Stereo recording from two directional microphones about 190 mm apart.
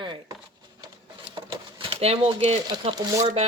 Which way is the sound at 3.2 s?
35° right (ahead or behind).